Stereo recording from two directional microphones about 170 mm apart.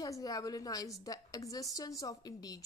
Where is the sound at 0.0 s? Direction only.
20° left (ahead or behind).